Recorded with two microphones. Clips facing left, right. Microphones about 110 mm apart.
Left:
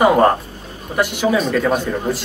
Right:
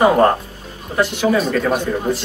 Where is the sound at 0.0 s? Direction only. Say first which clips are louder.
Even; 5° left (ahead or behind).